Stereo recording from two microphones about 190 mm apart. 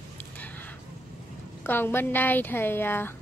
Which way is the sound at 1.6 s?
10° left (ahead or behind).